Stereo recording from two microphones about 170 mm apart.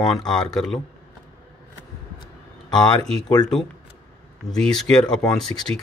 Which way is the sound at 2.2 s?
25° left (ahead or behind).